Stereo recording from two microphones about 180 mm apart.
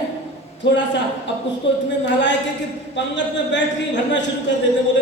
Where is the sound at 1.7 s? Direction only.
85° left.